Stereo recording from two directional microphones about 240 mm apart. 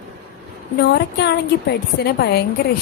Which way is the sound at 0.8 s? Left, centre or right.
Left.